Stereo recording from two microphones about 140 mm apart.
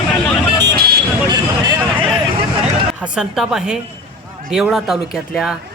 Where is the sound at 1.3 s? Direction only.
30° right (ahead or behind).